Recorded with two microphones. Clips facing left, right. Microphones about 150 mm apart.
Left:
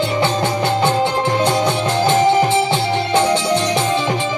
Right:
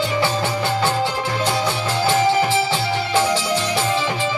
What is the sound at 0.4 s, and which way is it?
Music, 20° left (ahead or behind).